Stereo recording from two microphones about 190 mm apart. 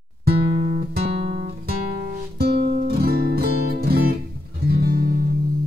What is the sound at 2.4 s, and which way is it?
Music, 55° right (ahead or behind).